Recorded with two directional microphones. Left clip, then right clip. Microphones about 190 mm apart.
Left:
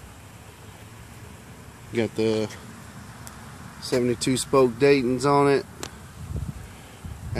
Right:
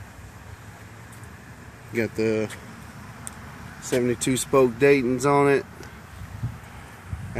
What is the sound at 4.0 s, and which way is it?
Speech, 10° left (ahead or behind).